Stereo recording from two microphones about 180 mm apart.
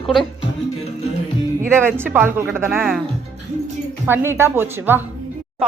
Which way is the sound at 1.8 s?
10° right (ahead or behind).